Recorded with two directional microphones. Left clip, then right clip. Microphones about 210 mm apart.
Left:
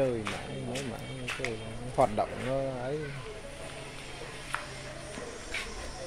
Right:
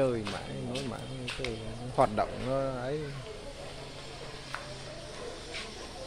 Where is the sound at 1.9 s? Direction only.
10° right (ahead or behind).